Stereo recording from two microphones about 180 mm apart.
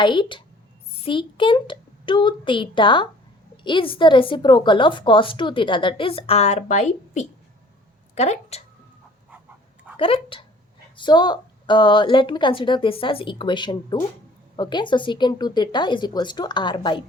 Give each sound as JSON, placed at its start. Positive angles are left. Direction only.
{"t": 0.0, "sound": "a woman's voice", "side_deg": 25}
{"t": 10.0, "sound": "a woman's voice", "side_deg": 30}